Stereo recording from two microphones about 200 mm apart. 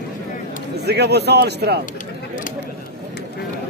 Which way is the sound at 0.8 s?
55° right (ahead or behind).